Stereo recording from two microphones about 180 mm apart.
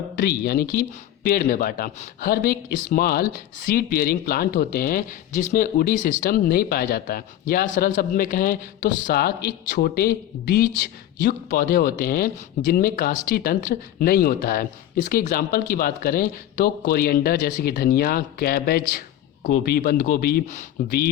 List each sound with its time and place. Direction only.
0.2 s speech: 60° left (ahead or behind)